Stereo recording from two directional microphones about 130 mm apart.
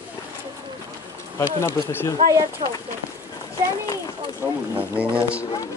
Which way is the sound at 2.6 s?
50° right (ahead or behind).